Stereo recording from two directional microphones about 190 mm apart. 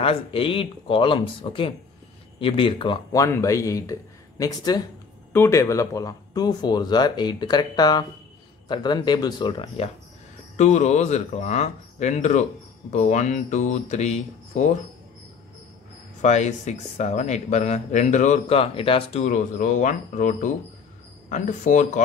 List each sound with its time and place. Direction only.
0.0 s speech: 30° left (ahead or behind)
10.5 s speech: 40° left (ahead or behind)
16.2 s speech: 40° left (ahead or behind)